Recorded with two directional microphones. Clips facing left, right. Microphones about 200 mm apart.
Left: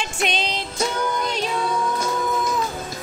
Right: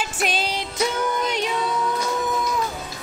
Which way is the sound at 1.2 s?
20° right (ahead or behind).